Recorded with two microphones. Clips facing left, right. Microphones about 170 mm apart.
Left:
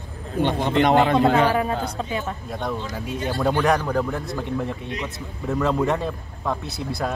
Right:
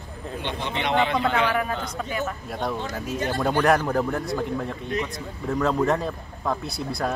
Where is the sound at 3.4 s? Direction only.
Centre (ahead or behind).